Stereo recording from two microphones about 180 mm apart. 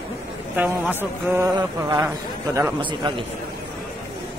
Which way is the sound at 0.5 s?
10° right (ahead or behind).